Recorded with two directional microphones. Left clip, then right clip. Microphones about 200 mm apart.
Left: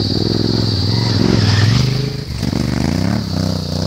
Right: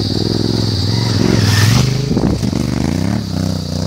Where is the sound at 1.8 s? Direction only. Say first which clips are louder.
Right 2 dB; 15° right (ahead or behind).